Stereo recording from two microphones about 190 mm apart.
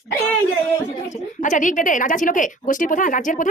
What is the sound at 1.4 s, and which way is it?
A woman's voice, 40° left (ahead or behind).